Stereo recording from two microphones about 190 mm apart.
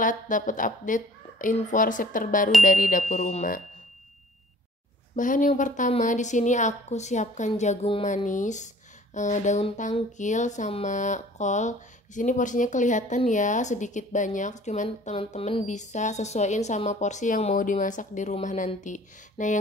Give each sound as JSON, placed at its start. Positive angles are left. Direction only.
{"t": 0.0, "sound": "a woman's voice", "side_deg": 45}
{"t": 5.1, "sound": "speech", "side_deg": 45}